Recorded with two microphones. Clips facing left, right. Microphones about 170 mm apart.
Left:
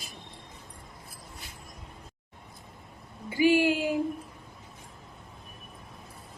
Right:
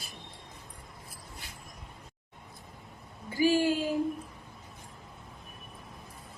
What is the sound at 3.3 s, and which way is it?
Speech, 15° left (ahead or behind).